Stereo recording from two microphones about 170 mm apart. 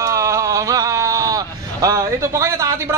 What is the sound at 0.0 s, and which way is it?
Speech, 15° right (ahead or behind).